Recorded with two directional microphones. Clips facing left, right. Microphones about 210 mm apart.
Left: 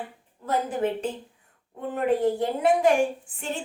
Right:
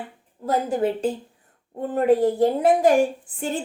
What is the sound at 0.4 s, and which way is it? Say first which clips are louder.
A woman's voice: right 4 dB; 35° right (ahead or behind).